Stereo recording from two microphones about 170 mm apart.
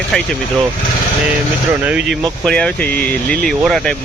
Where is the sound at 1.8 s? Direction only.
5° right (ahead or behind).